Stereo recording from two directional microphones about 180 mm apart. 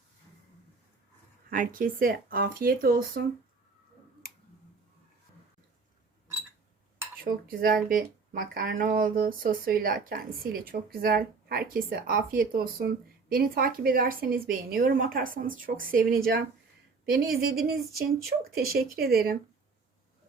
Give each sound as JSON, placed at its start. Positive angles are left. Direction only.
{"t": 1.5, "sound": "speech", "side_deg": -50}
{"t": 7.3, "sound": "speech", "side_deg": -55}
{"t": 17.5, "sound": "speech", "side_deg": -60}